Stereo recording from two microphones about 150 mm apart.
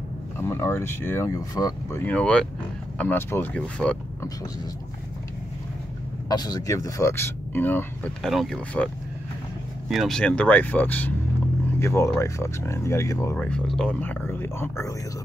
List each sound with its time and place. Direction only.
0.4 s speech: 15° left (ahead or behind)
6.2 s speech: 25° left (ahead or behind)
13.4 s speech: 5° left (ahead or behind)